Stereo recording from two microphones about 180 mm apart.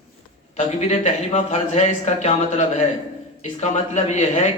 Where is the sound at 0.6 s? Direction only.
35° left (ahead or behind).